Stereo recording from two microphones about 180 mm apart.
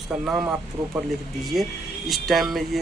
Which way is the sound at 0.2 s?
5° right (ahead or behind).